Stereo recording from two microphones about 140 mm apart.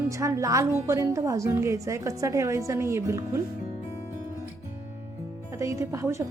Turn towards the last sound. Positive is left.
turn(degrees=-20)  # may be behind; listen again after turning